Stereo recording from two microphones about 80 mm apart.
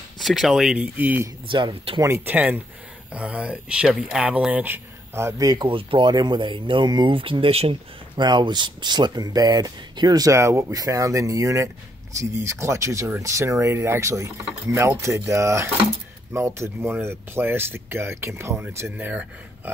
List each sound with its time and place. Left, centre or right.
0.2 s speech: centre
0.7 s speech: right
1.5 s speech: right
2.0 s speech: right
2.2 s speech: right
5.4 s speech: right
5.7 s speech: right
8.2 s speech: right
10.3 s speech: right
18.9 s speech: right